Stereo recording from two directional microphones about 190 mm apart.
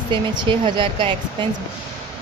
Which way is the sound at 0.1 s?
25° right (ahead or behind).